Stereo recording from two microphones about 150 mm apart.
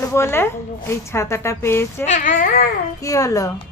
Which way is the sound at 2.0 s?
60° left (ahead or behind).